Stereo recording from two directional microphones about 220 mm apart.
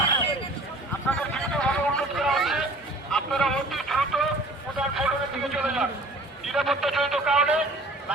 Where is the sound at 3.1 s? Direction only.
Centre (ahead or behind).